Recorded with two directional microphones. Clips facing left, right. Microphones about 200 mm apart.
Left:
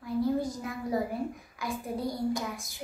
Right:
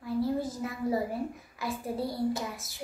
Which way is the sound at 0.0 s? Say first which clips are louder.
Left 1 dB; 5° right (ahead or behind).